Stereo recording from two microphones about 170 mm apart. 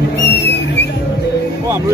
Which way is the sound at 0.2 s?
75° left (ahead or behind).